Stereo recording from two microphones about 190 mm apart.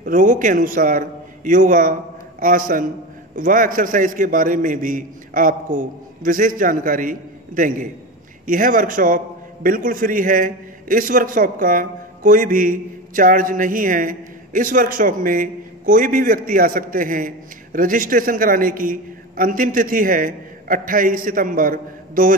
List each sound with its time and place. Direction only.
0.0 s a man's voice: 45° right (ahead or behind)